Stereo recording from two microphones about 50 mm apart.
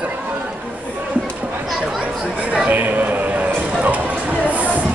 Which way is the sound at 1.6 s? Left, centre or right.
Centre.